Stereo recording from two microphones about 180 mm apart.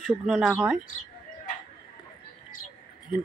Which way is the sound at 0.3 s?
5° right (ahead or behind).